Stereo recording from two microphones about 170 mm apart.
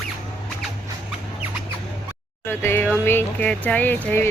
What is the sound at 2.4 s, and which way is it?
Speech, 15° left (ahead or behind).